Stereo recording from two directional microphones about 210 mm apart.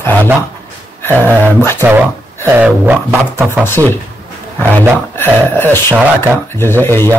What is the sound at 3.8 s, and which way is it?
Speech, 20° right (ahead or behind).